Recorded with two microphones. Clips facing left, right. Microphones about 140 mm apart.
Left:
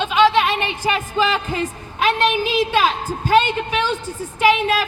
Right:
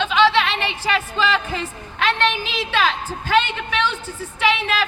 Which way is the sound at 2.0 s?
10° left (ahead or behind).